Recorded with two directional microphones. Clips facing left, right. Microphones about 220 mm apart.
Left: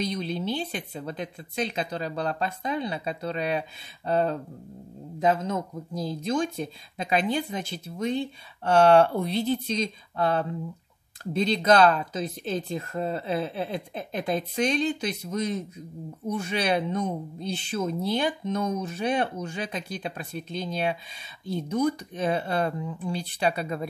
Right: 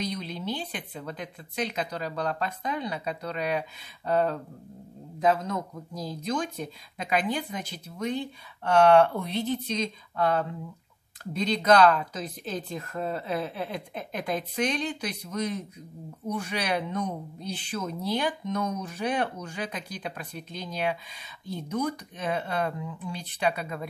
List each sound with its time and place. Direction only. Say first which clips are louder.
0.0 s speech: left 4 dB; 30° left (ahead or behind)